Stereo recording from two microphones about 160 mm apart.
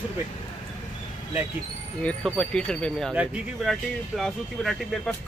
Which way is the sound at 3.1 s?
5° right (ahead or behind).